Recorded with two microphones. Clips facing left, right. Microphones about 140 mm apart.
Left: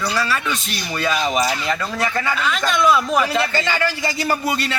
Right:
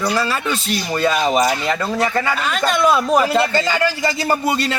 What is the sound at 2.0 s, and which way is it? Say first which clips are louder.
Speech: even; 5° right (ahead or behind).